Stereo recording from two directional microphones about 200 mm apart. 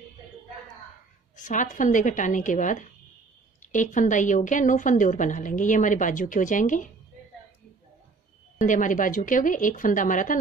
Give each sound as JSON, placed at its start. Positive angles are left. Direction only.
{"t": 1.3, "sound": "a woman's voice", "side_deg": 40}
{"t": 8.5, "sound": "a woman's voice", "side_deg": 40}